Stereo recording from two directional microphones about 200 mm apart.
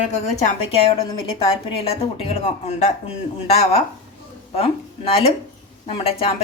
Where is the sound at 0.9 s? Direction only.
25° left (ahead or behind).